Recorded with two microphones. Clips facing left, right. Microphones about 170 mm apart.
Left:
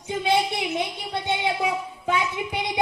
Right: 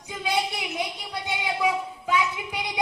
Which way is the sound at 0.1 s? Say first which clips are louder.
Left 5 dB; 30° left (ahead or behind).